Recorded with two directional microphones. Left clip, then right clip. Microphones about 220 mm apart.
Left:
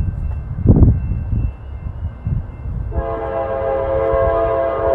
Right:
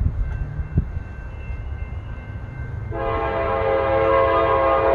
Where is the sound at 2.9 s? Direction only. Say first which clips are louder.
Left 1 dB; 15° left (ahead or behind).